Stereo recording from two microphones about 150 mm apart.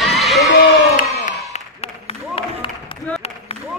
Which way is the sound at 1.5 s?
40° left (ahead or behind).